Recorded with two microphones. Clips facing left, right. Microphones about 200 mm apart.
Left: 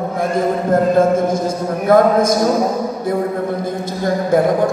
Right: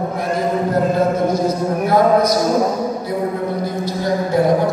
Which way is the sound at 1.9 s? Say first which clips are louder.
Left 3 dB; 50° left (ahead or behind).